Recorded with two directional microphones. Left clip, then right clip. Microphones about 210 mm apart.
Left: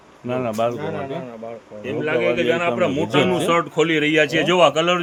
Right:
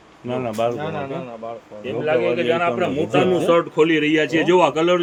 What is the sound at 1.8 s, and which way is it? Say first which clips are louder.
Speech: right 1 dB; 35° left (ahead or behind).